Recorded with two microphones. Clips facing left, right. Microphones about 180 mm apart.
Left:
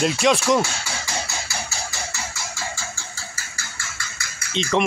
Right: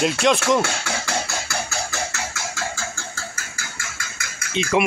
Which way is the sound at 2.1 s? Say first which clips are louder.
Right 3 dB; 80° right.